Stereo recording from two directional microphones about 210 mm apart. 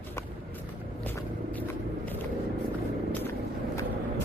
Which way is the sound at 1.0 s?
10° left (ahead or behind).